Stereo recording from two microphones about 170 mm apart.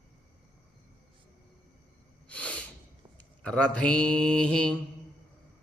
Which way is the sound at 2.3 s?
10° left (ahead or behind).